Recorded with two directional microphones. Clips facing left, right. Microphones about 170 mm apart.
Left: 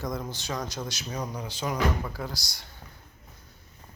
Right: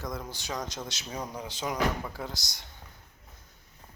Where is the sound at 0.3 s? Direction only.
15° right (ahead or behind).